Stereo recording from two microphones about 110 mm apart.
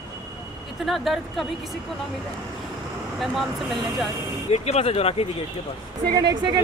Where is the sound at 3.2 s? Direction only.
Centre (ahead or behind).